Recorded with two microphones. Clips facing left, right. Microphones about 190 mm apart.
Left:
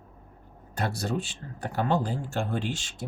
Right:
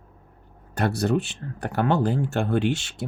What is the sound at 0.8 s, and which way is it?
Speech, 65° right (ahead or behind).